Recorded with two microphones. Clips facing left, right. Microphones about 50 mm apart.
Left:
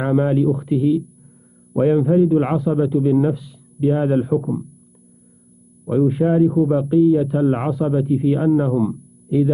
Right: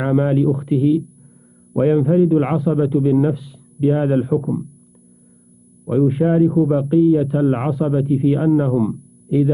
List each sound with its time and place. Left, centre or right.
0.0 s a man's voice: right
4.4 s speech: centre
6.2 s speech: centre
6.7 s speech: right
8.5 s speech: right
8.8 s a sound: right